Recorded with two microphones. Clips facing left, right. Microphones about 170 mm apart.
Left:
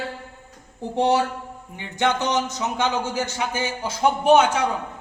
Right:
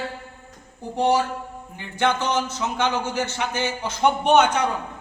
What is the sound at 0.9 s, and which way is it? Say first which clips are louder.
A man's voice: even; 20° left (ahead or behind).